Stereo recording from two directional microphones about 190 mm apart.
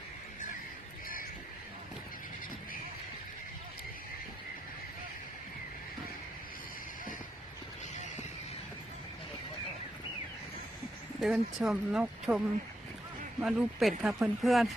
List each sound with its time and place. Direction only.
1.0 s a sound: 50° left (ahead or behind)
11.2 s speech: centre (ahead or behind)
13.4 s speech: centre (ahead or behind)